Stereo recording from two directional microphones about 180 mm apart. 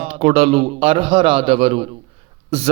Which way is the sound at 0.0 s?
30° right (ahead or behind).